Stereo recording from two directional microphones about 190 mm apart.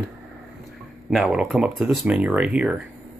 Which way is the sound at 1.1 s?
Centre (ahead or behind).